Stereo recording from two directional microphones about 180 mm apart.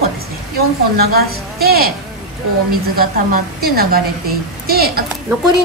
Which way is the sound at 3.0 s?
55° right (ahead or behind).